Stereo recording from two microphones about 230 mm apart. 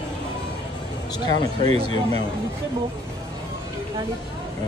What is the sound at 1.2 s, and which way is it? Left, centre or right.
Speech, right.